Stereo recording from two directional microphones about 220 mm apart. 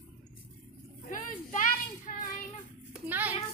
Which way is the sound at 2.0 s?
35° left (ahead or behind).